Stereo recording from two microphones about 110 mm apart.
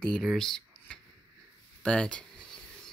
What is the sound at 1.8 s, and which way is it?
Speech, 10° left (ahead or behind).